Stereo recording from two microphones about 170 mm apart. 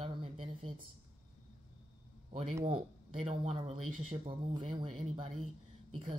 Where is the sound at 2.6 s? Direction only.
35° right (ahead or behind).